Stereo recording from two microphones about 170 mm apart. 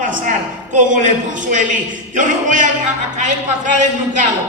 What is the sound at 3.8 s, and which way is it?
Speech, 45° right (ahead or behind).